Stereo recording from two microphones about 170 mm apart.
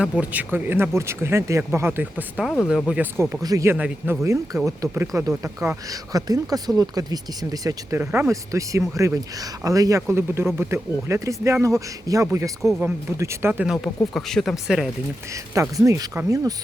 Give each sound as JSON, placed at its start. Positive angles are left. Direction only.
{"t": 0.0, "sound": "speech", "side_deg": -10}
{"t": 14.1, "sound": "speech", "side_deg": 0}
{"t": 15.7, "sound": "speech", "side_deg": -20}